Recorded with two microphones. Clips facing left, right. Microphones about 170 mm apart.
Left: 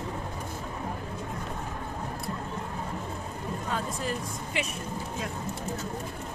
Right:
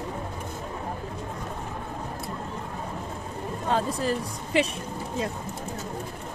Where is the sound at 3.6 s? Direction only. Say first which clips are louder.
Right 8 dB; 30° right (ahead or behind).